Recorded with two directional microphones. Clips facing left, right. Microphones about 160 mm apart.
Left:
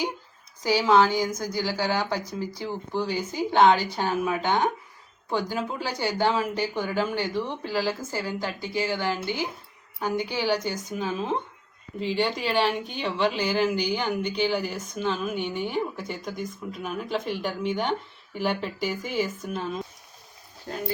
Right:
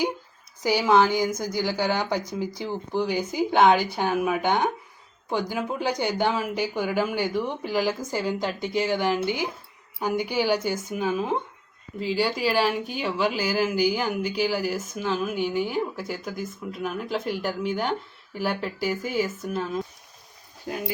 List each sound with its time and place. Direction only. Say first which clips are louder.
0.6 s speech: even; 15° right (ahead or behind)
20.7 s speech: right 1 dB; 10° right (ahead or behind)